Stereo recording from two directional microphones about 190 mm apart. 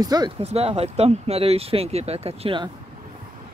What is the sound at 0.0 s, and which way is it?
Speech, 20° right (ahead or behind).